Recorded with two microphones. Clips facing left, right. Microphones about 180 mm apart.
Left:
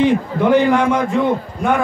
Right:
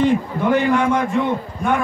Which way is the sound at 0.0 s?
85° left.